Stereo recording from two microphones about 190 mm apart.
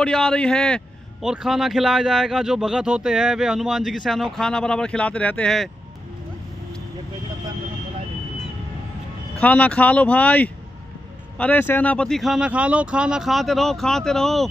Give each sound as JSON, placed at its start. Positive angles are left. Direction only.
{"t": 0.0, "sound": "a man's voice", "side_deg": 5}
{"t": 9.4, "sound": "speech", "side_deg": 5}